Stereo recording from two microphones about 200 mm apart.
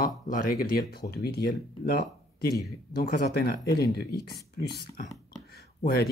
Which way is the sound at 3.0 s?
50° left (ahead or behind).